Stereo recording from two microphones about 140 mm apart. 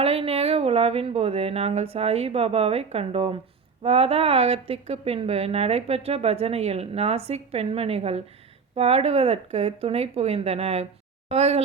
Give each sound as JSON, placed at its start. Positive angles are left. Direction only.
{"t": 0.0, "sound": "a woman's voice", "side_deg": -45}